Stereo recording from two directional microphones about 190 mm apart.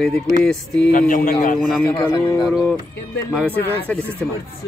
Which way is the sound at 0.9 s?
45° left (ahead or behind).